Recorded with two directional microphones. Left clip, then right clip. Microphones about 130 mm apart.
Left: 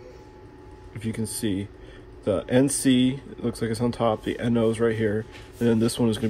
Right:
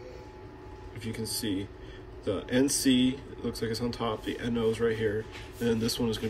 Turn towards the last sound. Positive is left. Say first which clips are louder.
# left 6 dB
turn(degrees=25)  # may be behind; listen again after turning